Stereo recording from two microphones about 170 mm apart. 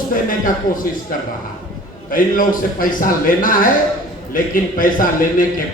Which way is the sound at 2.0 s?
55° left (ahead or behind).